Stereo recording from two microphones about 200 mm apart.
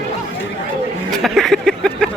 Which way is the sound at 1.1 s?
Centre (ahead or behind).